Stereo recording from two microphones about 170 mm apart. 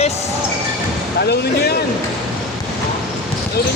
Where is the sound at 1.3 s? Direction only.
70° left (ahead or behind).